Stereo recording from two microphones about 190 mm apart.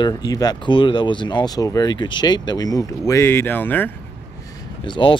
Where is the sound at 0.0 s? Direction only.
20° left (ahead or behind).